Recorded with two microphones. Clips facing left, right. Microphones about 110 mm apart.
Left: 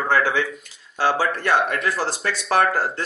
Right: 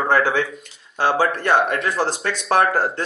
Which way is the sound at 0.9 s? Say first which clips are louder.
Right 2 dB; 20° right (ahead or behind).